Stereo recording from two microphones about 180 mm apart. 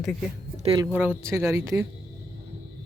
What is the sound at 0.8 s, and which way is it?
Speech, 10° right (ahead or behind).